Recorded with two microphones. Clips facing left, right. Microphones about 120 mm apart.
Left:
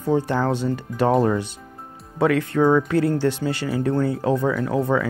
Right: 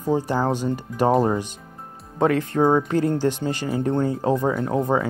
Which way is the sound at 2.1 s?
35° right (ahead or behind).